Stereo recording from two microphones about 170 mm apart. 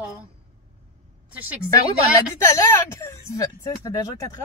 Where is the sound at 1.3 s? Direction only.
10° right (ahead or behind).